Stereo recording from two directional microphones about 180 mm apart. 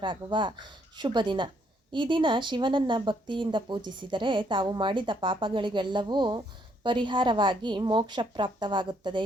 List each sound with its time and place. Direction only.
0.0 s speech: 25° right (ahead or behind)